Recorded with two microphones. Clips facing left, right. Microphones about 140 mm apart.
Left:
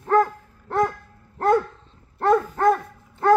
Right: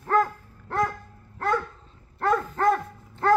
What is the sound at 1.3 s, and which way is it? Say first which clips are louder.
Dog: left 7 dB; 40° left (ahead or behind).